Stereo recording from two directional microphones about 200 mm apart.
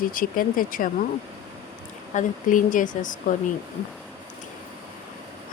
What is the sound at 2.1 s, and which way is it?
Speech, 40° left (ahead or behind).